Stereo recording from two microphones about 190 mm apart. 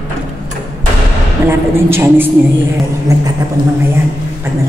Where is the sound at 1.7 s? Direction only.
10° right (ahead or behind).